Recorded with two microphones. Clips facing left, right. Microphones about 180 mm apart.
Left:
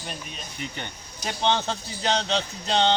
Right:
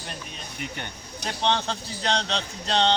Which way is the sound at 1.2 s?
5° left (ahead or behind).